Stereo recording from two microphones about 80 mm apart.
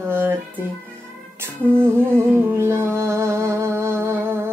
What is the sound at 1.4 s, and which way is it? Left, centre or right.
Music, right.